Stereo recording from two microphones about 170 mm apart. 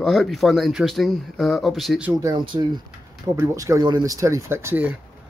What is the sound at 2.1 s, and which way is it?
Speech, 20° right (ahead or behind).